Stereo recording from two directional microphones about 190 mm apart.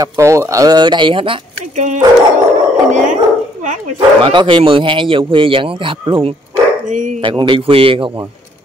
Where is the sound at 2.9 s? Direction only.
40° right (ahead or behind).